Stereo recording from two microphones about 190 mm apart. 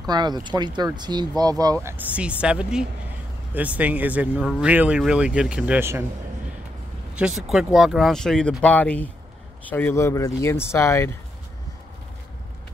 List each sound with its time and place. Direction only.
0.0 s speech: 20° right (ahead or behind)
7.2 s speech: 5° right (ahead or behind); by 11.1 s 15° left (ahead or behind)